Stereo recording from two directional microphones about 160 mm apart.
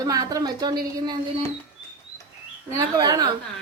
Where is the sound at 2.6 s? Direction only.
20° right (ahead or behind).